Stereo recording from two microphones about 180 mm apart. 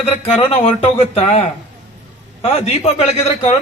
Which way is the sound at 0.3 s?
35° left (ahead or behind).